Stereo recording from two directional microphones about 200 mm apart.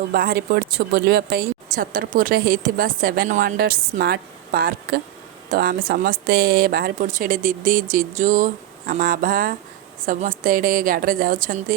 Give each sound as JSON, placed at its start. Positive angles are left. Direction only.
{"t": 0.1, "sound": "speech", "side_deg": -45}